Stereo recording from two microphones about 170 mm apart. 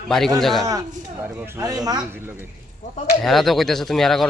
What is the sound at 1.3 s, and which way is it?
Speech, 15° right (ahead or behind).